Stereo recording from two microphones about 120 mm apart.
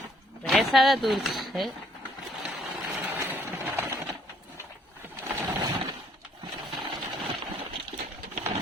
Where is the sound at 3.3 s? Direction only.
15° right (ahead or behind).